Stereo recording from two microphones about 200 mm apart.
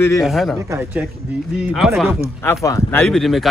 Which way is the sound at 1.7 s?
Centre (ahead or behind).